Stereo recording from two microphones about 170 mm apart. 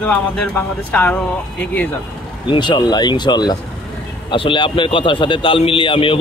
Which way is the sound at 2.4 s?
25° left (ahead or behind).